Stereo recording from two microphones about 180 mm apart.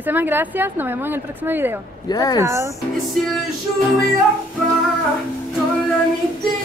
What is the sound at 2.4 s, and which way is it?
Speech, 15° right (ahead or behind).